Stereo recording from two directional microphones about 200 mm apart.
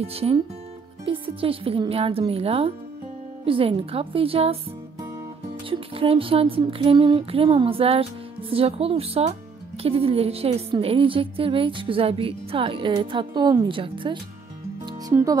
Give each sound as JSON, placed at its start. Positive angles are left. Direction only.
{"t": 0.0, "sound": "a woman's voice", "side_deg": -30}
{"t": 5.7, "sound": "a woman's voice", "side_deg": -25}